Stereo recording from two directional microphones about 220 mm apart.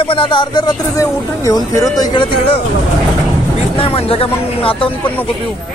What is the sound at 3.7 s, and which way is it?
Speech, 25° left (ahead or behind).